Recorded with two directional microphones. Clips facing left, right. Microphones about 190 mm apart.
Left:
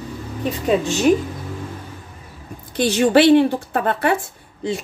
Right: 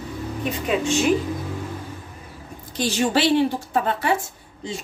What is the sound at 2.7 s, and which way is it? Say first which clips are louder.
Speech: left 7 dB; 60° left (ahead or behind).